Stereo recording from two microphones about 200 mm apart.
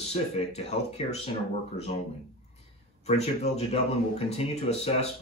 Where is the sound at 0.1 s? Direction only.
30° left (ahead or behind).